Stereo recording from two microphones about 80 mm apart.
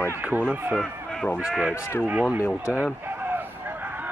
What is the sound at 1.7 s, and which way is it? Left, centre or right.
Speech, left.